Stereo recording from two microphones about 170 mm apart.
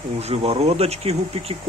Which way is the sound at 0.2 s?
35° right (ahead or behind).